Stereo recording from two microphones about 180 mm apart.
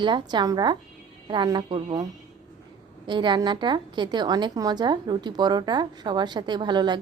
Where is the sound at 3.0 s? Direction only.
25° right (ahead or behind).